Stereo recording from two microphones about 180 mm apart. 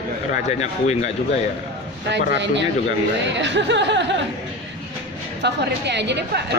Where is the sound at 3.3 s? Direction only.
80° right.